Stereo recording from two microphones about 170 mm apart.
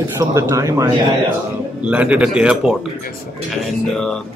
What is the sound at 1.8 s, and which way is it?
Speech, 10° right (ahead or behind).